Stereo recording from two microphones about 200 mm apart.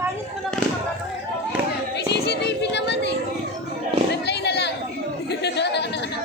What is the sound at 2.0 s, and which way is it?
Music, 55° left (ahead or behind).